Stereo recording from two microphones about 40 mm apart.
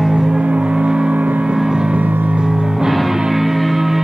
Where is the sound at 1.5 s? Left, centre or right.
Centre.